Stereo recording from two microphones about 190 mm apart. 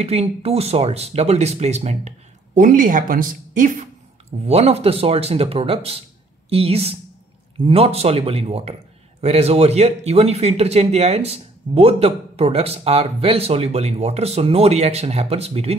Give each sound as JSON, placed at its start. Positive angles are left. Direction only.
{"t": 0.0, "sound": "speech", "side_deg": -35}